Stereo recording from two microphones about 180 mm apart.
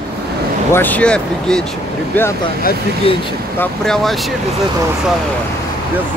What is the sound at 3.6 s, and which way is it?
Speech, 5° left (ahead or behind).